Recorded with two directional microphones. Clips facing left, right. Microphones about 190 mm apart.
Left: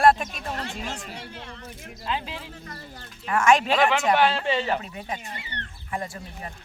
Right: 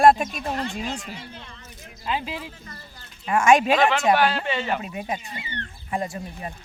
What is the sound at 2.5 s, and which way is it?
Speech, 65° left (ahead or behind).